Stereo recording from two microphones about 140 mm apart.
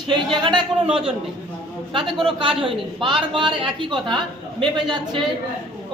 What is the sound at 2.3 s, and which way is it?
A man's voice, 35° right (ahead or behind).